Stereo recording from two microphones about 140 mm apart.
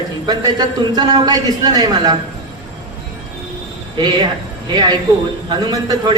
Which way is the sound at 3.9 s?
35° right (ahead or behind).